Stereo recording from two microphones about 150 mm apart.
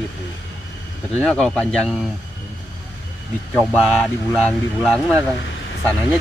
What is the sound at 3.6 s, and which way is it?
Speech, 5° left (ahead or behind).